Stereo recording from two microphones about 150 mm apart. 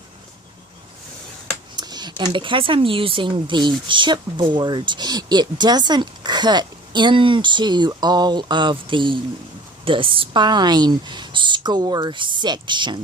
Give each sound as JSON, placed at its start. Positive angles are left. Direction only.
{"t": 1.7, "sound": "speech", "side_deg": -30}